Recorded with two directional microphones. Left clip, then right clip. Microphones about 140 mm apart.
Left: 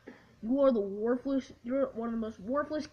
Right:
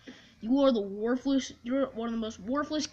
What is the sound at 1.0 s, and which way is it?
Speech, 35° left (ahead or behind).